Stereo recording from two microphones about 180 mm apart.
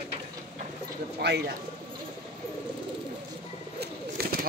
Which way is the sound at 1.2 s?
65° right (ahead or behind).